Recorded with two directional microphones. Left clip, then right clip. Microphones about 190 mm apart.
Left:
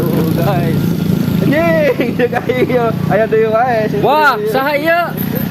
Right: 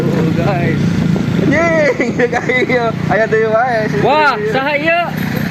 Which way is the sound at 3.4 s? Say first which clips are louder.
Left 1 dB; 25° left (ahead or behind).